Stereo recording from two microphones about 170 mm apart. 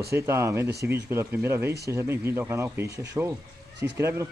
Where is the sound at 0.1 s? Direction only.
15° right (ahead or behind).